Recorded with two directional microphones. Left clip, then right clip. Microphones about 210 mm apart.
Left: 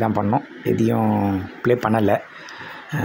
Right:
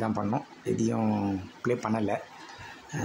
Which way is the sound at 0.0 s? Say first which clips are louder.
Left 10 dB; 20° left (ahead or behind).